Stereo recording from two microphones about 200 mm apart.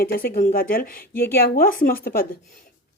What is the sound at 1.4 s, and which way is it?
Speech, 50° left (ahead or behind).